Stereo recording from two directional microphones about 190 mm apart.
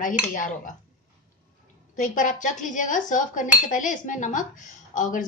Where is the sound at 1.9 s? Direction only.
45° left (ahead or behind).